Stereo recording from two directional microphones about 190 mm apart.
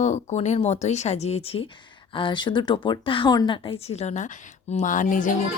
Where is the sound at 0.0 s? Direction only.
35° left (ahead or behind).